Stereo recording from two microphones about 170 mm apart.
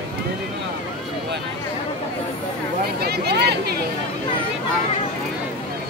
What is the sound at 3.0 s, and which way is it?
Speech, 70° right (ahead or behind).